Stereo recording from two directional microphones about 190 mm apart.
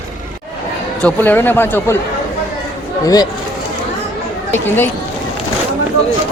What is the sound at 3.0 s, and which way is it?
Speech, 20° left (ahead or behind).